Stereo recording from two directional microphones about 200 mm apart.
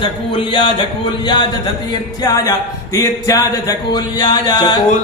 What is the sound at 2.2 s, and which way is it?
Music, 20° left (ahead or behind).